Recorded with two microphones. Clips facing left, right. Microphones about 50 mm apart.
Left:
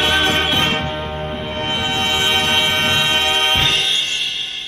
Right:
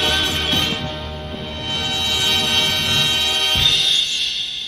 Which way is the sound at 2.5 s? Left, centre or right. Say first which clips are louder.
Left 3 dB; left.